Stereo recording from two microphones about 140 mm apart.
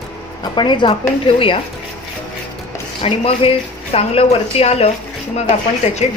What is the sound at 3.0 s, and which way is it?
Speech, 40° left (ahead or behind).